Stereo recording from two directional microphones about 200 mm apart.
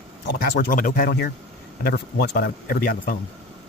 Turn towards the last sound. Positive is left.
turn(degrees=45)  # may be behind; listen again after turning